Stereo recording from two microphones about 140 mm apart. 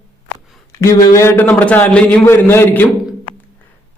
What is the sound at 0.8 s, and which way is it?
A man's voice, 20° left (ahead or behind).